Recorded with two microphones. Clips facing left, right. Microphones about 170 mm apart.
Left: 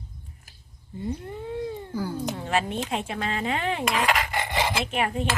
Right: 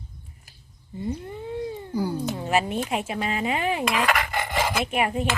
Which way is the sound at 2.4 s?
10° right (ahead or behind).